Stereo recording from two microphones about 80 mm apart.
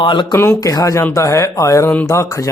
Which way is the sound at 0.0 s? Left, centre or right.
Left.